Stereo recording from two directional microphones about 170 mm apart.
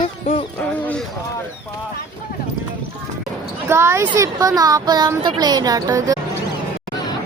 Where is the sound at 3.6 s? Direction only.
15° right (ahead or behind).